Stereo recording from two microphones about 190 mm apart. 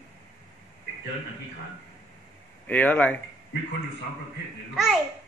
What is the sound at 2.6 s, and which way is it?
Speech, 10° left (ahead or behind).